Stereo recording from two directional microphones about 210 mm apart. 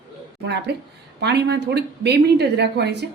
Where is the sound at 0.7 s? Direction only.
50° right (ahead or behind).